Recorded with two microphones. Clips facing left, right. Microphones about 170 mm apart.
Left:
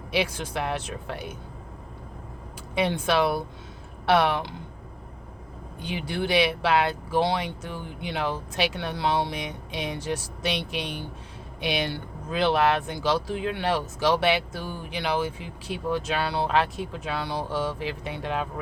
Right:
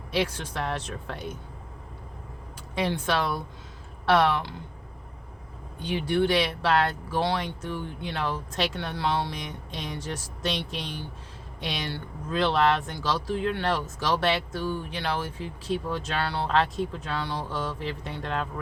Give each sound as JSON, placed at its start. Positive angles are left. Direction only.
{"t": 0.1, "sound": "speech", "side_deg": 10}
{"t": 1.1, "sound": "speech", "side_deg": 65}
{"t": 2.8, "sound": "speech", "side_deg": 10}
{"t": 5.8, "sound": "speech", "side_deg": 10}
{"t": 10.7, "sound": "speech", "side_deg": 65}
{"t": 11.9, "sound": "speech", "side_deg": 10}